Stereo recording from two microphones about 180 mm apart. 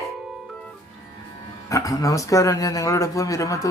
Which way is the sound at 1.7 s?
20° left (ahead or behind).